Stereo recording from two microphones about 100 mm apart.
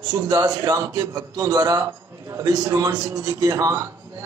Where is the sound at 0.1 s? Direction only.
35° right (ahead or behind).